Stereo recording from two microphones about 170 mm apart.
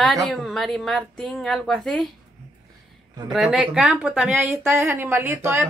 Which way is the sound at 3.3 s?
5° right (ahead or behind).